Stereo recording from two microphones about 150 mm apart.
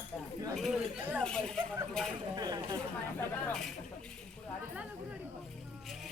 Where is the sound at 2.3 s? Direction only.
25° right (ahead or behind).